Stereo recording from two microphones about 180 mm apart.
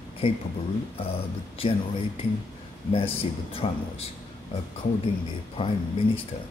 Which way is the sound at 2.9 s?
30° left (ahead or behind).